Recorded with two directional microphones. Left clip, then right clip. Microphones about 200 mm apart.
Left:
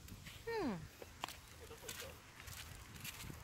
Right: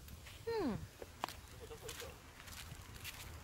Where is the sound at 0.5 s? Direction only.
10° left (ahead or behind).